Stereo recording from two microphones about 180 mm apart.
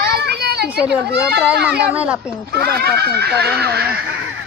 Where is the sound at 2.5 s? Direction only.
60° right (ahead or behind).